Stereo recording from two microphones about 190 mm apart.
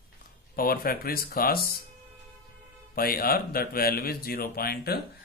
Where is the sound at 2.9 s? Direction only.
50° left (ahead or behind).